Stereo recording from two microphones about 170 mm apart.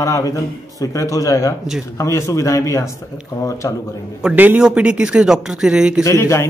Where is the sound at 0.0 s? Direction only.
20° left (ahead or behind).